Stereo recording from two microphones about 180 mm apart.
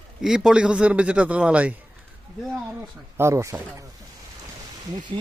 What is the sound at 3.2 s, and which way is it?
Speech, 15° right (ahead or behind).